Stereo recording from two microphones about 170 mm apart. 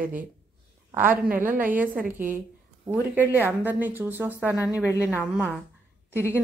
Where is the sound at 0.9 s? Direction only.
10° right (ahead or behind).